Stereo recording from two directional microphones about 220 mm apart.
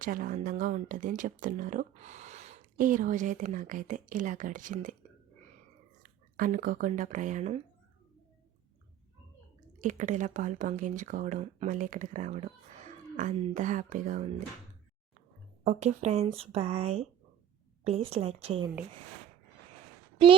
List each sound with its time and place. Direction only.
0.0 s speech: 40° right (ahead or behind)
6.0 s speech: 40° right (ahead or behind)
9.7 s speech: 35° right (ahead or behind)
15.6 s speech: 30° right (ahead or behind)